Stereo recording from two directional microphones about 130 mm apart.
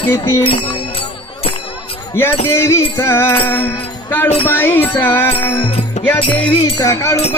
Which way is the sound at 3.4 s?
15° left (ahead or behind).